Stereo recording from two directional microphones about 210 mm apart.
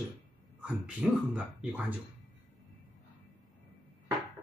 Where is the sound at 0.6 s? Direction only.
5° right (ahead or behind).